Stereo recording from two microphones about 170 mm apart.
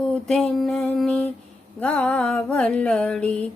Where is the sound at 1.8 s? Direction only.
5° left (ahead or behind).